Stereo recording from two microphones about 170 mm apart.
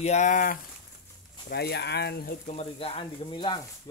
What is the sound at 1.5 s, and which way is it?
Speech, 75° left (ahead or behind).